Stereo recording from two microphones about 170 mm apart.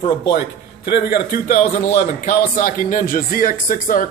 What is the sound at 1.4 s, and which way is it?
A man's voice, 55° left (ahead or behind).